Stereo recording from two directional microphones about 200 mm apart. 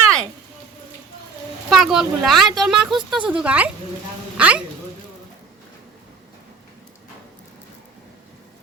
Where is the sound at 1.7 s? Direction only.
Centre (ahead or behind).